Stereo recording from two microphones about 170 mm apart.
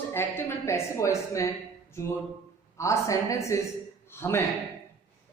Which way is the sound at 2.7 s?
15° left (ahead or behind).